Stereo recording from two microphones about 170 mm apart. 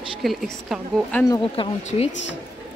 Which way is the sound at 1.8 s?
45° left (ahead or behind).